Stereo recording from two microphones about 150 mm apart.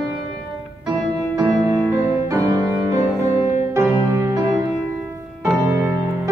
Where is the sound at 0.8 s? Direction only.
25° right (ahead or behind).